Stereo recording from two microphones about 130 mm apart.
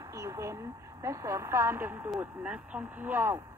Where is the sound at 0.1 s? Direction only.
25° right (ahead or behind).